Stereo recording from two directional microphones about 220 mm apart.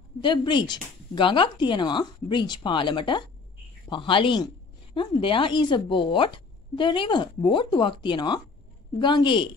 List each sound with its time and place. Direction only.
0.2 s speech: 20° left (ahead or behind)